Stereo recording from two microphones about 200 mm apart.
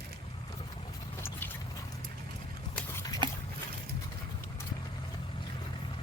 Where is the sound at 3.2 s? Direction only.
20° right (ahead or behind).